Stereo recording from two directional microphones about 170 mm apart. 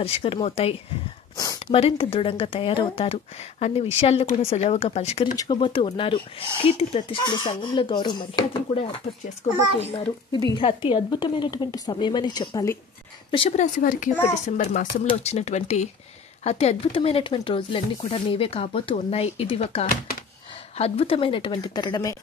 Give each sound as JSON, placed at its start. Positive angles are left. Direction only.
{"t": 0.0, "sound": "speech", "side_deg": 35}
{"t": 1.3, "sound": "a sound", "side_deg": 20}
{"t": 1.7, "sound": "speech", "side_deg": 35}
{"t": 9.6, "sound": "a child's voice", "side_deg": -30}
{"t": 10.3, "sound": "speech", "side_deg": 25}
{"t": 13.3, "sound": "speech", "side_deg": 35}
{"t": 15.0, "sound": "speech", "side_deg": 40}